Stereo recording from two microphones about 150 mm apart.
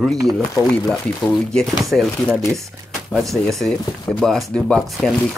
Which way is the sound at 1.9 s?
10° right (ahead or behind).